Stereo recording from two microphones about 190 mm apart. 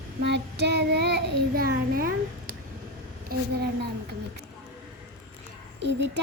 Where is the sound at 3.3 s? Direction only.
55° right (ahead or behind).